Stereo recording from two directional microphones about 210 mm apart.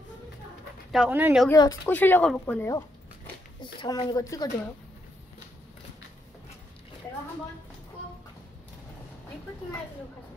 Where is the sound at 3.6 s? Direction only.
20° left (ahead or behind).